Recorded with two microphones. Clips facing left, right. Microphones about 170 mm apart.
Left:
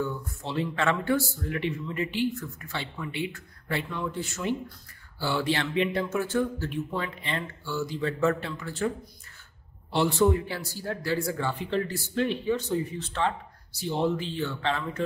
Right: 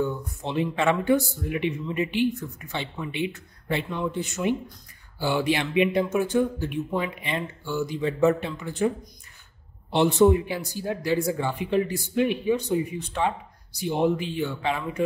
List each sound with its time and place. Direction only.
0.0 s speech: 15° right (ahead or behind)